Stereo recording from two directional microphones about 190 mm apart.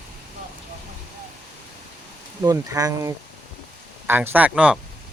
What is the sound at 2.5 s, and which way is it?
Speech, 15° right (ahead or behind).